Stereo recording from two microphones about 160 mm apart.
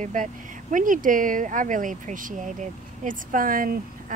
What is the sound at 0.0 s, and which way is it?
Speech, 55° right (ahead or behind).